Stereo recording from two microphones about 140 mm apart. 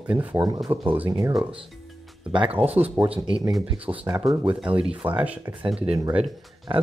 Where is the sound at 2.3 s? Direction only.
40° right (ahead or behind).